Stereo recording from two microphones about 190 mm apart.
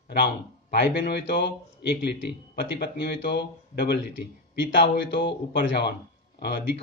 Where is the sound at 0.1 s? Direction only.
60° left (ahead or behind).